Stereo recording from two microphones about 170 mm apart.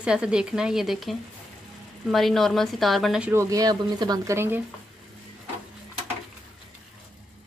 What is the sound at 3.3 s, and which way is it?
Speech, 20° right (ahead or behind).